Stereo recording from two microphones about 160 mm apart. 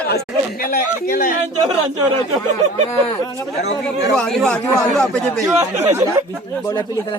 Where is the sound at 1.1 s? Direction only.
60° left (ahead or behind).